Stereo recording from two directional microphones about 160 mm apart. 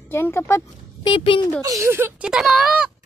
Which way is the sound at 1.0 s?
30° left (ahead or behind).